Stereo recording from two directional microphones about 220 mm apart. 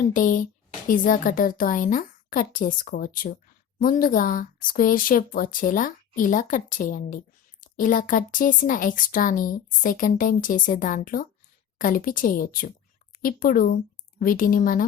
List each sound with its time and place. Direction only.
0.1 s speech: 35° left (ahead or behind)